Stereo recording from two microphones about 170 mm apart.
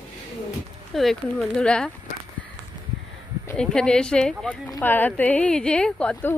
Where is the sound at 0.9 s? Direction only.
Centre (ahead or behind).